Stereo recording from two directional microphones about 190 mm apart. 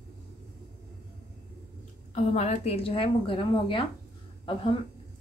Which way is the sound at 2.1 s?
35° left (ahead or behind).